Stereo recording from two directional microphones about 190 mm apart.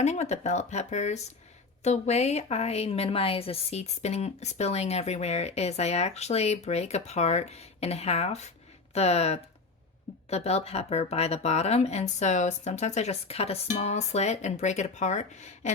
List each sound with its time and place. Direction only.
0.0 s a woman's voice: 35° left (ahead or behind)